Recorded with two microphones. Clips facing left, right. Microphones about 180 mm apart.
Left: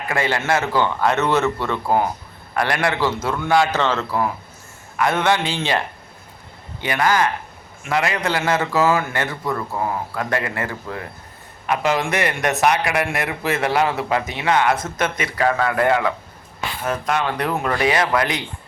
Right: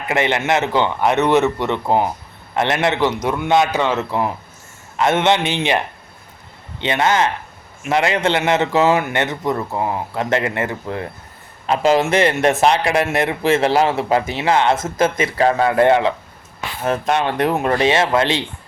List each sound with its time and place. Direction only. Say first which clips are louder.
0.1 s a man's voice: right 3 dB; 20° right (ahead or behind)